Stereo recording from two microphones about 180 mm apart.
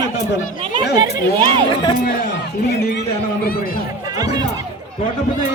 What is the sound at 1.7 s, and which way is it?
Speech, 25° left (ahead or behind).